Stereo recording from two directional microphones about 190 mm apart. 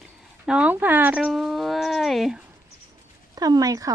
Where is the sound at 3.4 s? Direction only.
20° right (ahead or behind).